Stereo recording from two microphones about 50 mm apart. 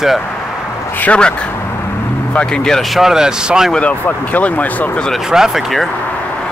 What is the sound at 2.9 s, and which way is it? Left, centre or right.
Speech, centre.